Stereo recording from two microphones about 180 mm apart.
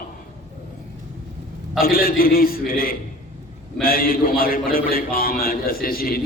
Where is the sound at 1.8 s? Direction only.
55° left (ahead or behind).